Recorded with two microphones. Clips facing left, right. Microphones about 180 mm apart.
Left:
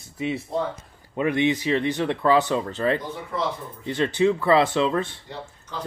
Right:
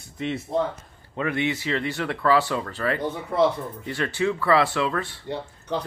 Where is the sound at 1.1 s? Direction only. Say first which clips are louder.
Left 4 dB; 20° left (ahead or behind).